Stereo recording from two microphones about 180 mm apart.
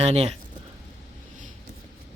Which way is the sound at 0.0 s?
35° right (ahead or behind).